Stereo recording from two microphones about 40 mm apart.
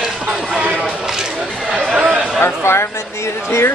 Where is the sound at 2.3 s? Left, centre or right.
Left.